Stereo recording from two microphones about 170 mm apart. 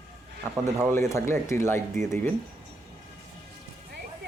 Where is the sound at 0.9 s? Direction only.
15° left (ahead or behind).